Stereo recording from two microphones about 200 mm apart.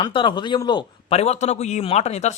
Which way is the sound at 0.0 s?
25° left (ahead or behind).